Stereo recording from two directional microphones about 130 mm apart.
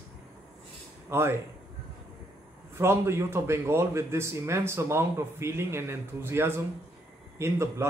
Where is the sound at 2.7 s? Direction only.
20° right (ahead or behind).